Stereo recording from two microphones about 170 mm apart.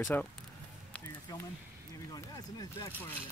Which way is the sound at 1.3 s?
20° left (ahead or behind).